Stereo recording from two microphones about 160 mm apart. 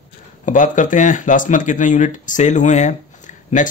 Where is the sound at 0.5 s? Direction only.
55° left (ahead or behind).